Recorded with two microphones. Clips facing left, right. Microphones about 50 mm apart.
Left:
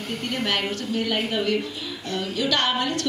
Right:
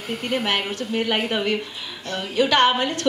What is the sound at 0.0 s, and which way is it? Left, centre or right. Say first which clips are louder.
Speech: right 3 dB; centre.